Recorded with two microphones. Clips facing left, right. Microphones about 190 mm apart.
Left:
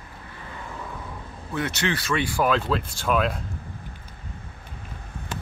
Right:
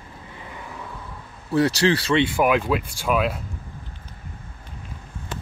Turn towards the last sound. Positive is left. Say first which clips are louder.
# right 1 dB
turn(degrees=-5)  # may be behind; listen again after turning